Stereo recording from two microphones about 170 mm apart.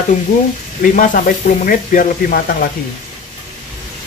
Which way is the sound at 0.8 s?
55° left (ahead or behind).